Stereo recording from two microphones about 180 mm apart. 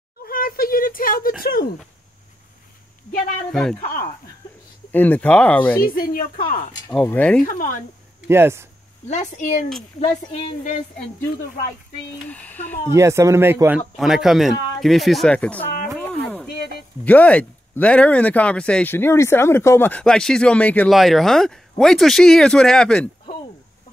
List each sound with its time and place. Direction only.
0.2 s a sound: 55° left (ahead or behind)
1.4 s speech: 55° left (ahead or behind)
4.9 s speech: 10° left (ahead or behind)
5.9 s speech: 55° left (ahead or behind)
6.9 s speech: 15° left (ahead or behind)
7.4 s speech: 50° left (ahead or behind)
8.3 s speech: 15° right (ahead or behind)
9.1 s speech: 40° left (ahead or behind)
12.3 s speech: 10° left (ahead or behind)
12.9 s speech: 15° right (ahead or behind)
13.9 s speech: centre (ahead or behind)